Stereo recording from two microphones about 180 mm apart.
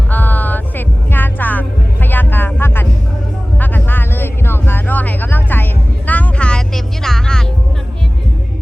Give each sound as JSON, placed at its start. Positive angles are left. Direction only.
{"t": 0.1, "sound": "music", "side_deg": 10}
{"t": 3.6, "sound": "a sound", "side_deg": 10}
{"t": 6.1, "sound": "music", "side_deg": 5}